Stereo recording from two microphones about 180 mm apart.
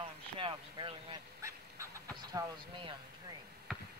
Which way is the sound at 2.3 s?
20° right (ahead or behind).